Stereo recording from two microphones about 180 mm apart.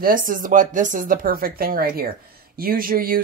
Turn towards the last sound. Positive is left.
turn(degrees=-55)  # may be behind; listen again after turning